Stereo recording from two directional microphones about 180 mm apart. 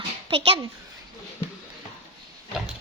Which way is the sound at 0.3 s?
30° right (ahead or behind).